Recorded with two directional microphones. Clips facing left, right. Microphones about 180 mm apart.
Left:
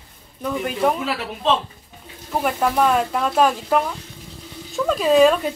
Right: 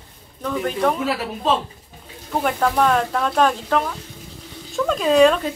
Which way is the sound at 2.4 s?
5° left (ahead or behind).